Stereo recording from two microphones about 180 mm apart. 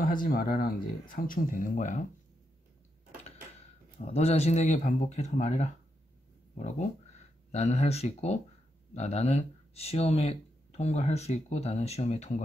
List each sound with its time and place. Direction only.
0.0 s speech: 50° left (ahead or behind)
4.0 s speech: 35° left (ahead or behind)